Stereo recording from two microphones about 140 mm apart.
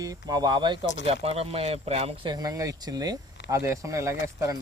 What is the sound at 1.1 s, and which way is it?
Speech, 45° right (ahead or behind).